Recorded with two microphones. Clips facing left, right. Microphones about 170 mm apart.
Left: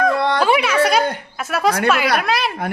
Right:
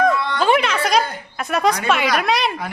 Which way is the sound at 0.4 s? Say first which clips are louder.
Right 1 dB; 5° left (ahead or behind).